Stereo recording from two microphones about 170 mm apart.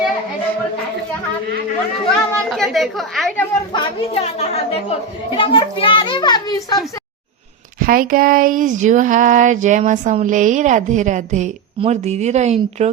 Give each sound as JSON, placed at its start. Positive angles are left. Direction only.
{"t": 2.0, "sound": "a woman's voice", "side_deg": 5}
{"t": 3.7, "sound": "a woman's voice", "side_deg": 30}
{"t": 7.8, "sound": "a woman's voice", "side_deg": -60}